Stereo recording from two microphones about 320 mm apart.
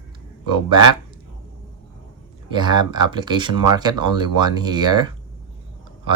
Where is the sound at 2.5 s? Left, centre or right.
Centre.